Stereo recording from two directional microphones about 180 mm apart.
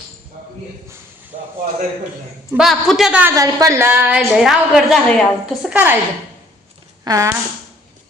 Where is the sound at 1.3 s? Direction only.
45° right (ahead or behind).